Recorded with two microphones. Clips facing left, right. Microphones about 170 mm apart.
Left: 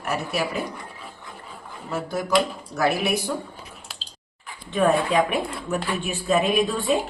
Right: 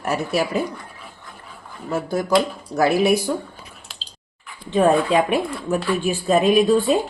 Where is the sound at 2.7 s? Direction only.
35° right (ahead or behind).